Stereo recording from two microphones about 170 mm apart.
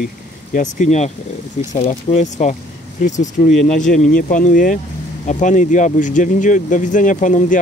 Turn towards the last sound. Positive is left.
turn(degrees=50)  # may be behind; listen again after turning